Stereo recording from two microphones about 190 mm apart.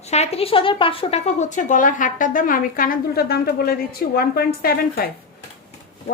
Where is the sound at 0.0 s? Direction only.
35° left (ahead or behind).